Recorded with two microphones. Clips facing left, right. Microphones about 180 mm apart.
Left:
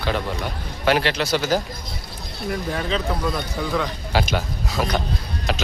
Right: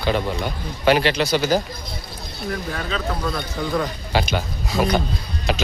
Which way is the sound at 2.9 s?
20° left (ahead or behind).